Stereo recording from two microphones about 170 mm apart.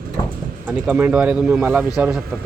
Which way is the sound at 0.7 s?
10° right (ahead or behind).